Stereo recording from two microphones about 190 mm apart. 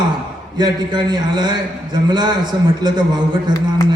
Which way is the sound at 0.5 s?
20° right (ahead or behind).